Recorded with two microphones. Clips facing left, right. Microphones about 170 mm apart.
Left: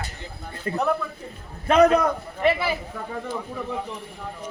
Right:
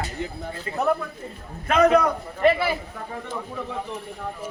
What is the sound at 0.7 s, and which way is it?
Speech, 45° left (ahead or behind).